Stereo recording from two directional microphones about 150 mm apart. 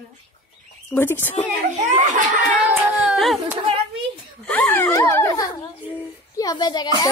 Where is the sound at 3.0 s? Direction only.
Centre (ahead or behind).